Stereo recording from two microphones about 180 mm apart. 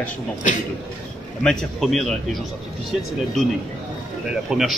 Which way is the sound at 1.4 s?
Centre (ahead or behind).